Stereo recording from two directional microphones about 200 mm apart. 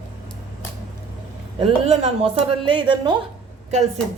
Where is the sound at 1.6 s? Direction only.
30° right (ahead or behind).